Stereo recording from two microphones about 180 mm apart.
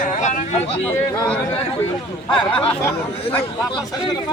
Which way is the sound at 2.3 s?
30° left (ahead or behind).